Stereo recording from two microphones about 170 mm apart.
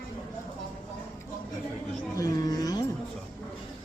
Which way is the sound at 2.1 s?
20° left (ahead or behind).